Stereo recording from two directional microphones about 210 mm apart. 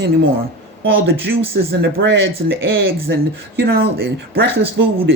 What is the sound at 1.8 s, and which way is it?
Speech, 55° right (ahead or behind).